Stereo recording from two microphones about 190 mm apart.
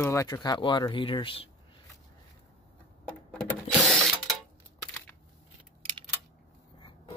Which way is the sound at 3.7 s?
Centre (ahead or behind).